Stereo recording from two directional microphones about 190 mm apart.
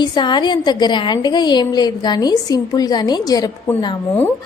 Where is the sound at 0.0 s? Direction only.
25° left (ahead or behind).